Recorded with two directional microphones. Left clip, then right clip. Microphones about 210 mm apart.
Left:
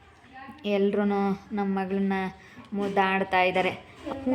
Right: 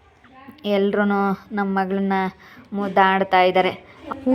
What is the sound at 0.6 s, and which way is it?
A woman's voice, 20° right (ahead or behind).